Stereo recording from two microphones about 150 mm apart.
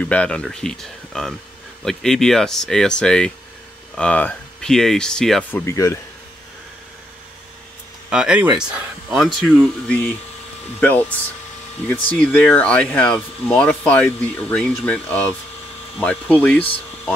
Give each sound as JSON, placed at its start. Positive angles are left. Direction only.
{"t": 0.0, "sound": "speech", "side_deg": 10}
{"t": 5.5, "sound": "speech", "side_deg": 15}
{"t": 8.1, "sound": "speech", "side_deg": -5}